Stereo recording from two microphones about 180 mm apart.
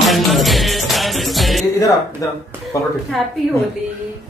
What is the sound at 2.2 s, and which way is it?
Speech, 20° left (ahead or behind).